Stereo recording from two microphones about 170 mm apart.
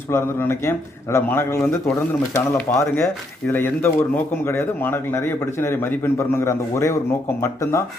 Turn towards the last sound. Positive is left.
turn(degrees=15)  # may be behind; listen again after turning